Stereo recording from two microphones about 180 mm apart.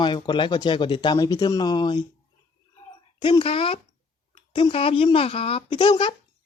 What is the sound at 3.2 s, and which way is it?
Speech, 30° left (ahead or behind).